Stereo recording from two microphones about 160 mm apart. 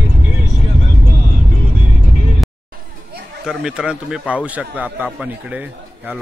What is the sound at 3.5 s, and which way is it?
A man's voice, 5° right (ahead or behind).